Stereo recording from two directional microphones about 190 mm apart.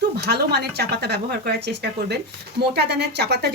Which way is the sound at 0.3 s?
60° right (ahead or behind).